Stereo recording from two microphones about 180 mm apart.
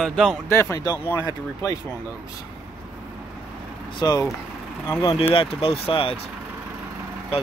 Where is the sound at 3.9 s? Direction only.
25° left (ahead or behind).